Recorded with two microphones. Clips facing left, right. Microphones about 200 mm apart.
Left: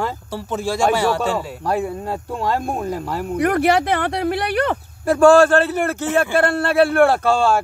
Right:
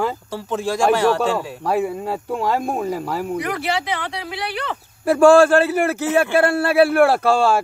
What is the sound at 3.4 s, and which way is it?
Speech, 55° left (ahead or behind).